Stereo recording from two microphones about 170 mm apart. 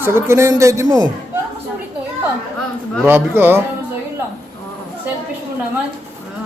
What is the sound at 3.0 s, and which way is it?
Speech, 15° right (ahead or behind).